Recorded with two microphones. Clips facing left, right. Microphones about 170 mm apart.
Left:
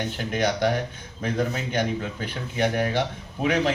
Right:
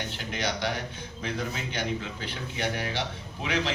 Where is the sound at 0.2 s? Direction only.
50° left (ahead or behind).